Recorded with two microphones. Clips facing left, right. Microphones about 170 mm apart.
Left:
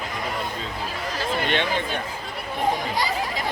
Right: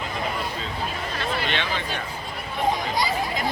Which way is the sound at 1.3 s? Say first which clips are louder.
Left 5 dB; 50° left (ahead or behind).